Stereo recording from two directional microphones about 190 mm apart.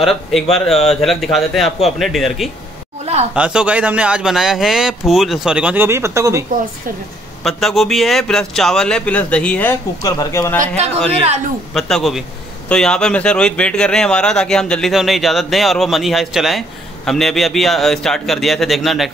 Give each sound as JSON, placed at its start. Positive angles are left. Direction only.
{"t": 0.0, "sound": "a man's voice", "side_deg": 0}
{"t": 7.4, "sound": "a man's voice", "side_deg": 0}
{"t": 11.1, "sound": "speech", "side_deg": -35}
{"t": 11.7, "sound": "a man's voice", "side_deg": 0}